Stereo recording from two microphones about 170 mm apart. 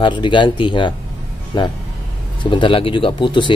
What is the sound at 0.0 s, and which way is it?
Speech, 30° left (ahead or behind).